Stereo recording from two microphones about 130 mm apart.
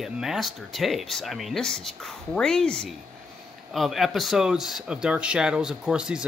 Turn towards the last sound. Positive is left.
turn(degrees=-5)  # may be behind; listen again after turning